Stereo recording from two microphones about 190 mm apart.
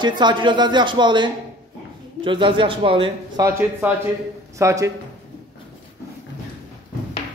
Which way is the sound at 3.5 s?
10° right (ahead or behind).